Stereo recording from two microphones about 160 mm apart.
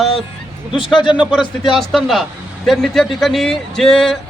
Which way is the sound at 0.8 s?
30° left (ahead or behind).